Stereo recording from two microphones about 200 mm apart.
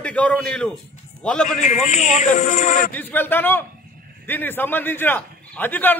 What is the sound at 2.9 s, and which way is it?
A man's voice, 10° left (ahead or behind).